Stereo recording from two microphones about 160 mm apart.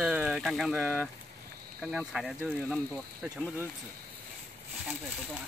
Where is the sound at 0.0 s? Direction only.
5° right (ahead or behind).